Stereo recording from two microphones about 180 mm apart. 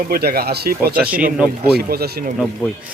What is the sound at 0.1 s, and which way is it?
Speech, 60° right (ahead or behind).